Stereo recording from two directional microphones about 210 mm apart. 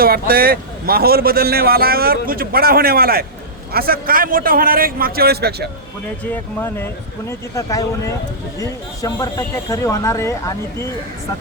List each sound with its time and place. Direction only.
0.0 s a man's voice: 45° right (ahead or behind)
6.3 s speech: 10° left (ahead or behind)